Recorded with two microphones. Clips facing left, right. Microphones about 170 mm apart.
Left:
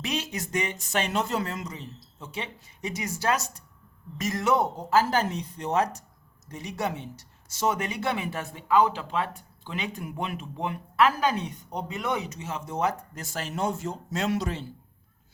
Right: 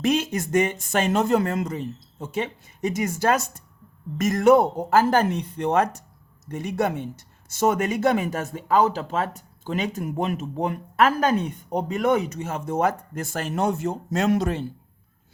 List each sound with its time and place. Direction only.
0.0 s speech: 50° right (ahead or behind)